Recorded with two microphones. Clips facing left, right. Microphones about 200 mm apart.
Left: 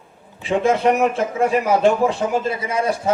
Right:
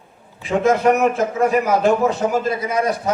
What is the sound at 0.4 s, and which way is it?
A man's voice, 30° left (ahead or behind).